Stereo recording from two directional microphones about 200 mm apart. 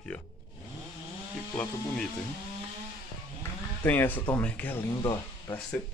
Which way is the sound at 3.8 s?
10° left (ahead or behind).